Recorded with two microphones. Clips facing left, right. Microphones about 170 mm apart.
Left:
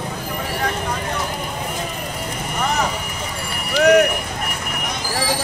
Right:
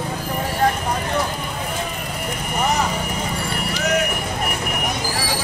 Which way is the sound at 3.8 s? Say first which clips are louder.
Left 10 dB; 65° left (ahead or behind).